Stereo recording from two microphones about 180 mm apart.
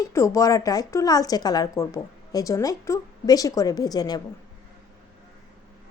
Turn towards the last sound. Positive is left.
turn(degrees=20)  # may be behind; listen again after turning